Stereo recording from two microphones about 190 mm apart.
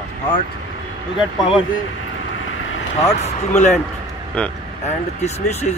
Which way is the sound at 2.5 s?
90° left.